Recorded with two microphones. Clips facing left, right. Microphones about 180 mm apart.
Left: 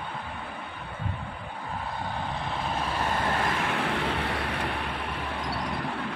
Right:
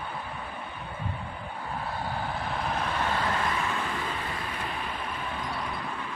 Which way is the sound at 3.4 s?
65° left (ahead or behind).